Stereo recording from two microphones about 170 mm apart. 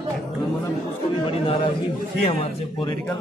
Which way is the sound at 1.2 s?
30° left (ahead or behind).